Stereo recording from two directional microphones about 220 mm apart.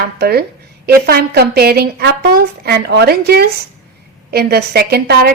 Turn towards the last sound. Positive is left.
turn(degrees=-45)  # may be behind; listen again after turning